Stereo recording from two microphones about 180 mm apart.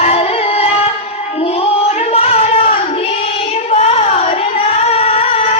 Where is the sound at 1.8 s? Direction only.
35° left (ahead or behind).